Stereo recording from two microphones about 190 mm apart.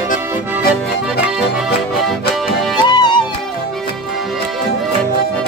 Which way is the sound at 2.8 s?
25° left (ahead or behind).